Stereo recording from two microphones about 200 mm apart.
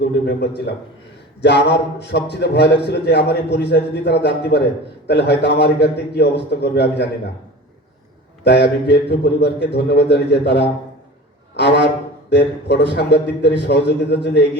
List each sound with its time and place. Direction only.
0.3 s a man's voice: 55° left (ahead or behind)
8.4 s a man's voice: 55° left (ahead or behind)